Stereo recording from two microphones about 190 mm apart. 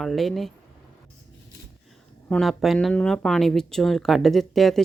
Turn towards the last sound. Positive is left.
turn(degrees=0)  # may be behind; listen again after turning